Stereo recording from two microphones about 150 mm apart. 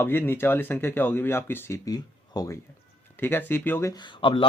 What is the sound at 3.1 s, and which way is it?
Speech, 15° left (ahead or behind).